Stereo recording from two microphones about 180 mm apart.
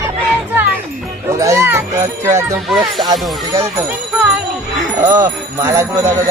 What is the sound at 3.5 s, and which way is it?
Speech, 15° right (ahead or behind).